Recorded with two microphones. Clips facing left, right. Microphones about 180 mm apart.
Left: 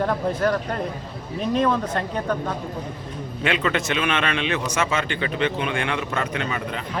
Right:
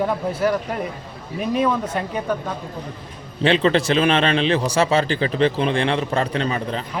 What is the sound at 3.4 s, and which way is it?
A man's voice, 30° right (ahead or behind).